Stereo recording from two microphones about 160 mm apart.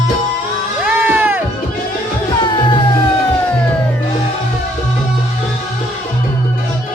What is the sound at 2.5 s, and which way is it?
Music, 35° left (ahead or behind).